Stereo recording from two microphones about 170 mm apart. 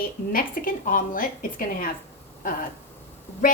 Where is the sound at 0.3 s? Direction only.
55° left (ahead or behind).